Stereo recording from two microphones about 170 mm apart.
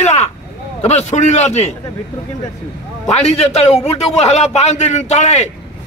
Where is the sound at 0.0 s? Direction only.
40° left (ahead or behind).